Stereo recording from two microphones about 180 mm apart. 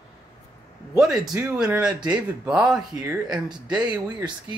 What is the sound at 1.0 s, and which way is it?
Speech, 20° right (ahead or behind).